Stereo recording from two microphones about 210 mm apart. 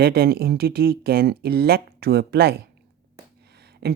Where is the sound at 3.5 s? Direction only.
50° right (ahead or behind).